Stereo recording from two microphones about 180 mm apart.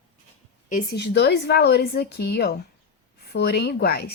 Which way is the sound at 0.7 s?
55° left (ahead or behind).